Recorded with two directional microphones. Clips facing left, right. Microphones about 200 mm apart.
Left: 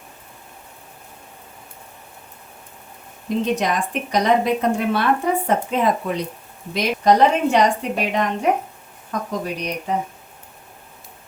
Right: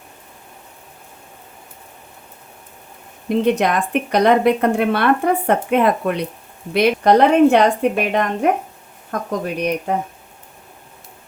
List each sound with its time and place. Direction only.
3.2 s speech: 60° right (ahead or behind)